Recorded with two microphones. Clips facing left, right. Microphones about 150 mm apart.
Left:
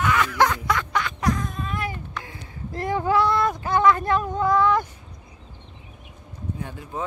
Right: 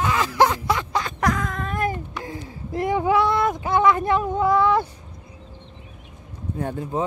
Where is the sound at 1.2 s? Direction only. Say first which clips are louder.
Right 2 dB; 90° right.